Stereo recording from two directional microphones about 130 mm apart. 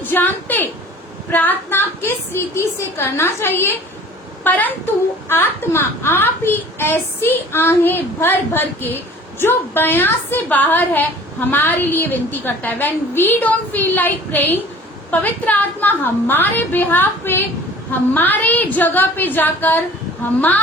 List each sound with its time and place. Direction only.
0.0 s a woman's voice: 15° left (ahead or behind)